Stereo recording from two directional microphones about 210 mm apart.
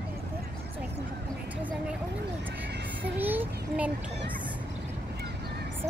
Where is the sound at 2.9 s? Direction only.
10° right (ahead or behind).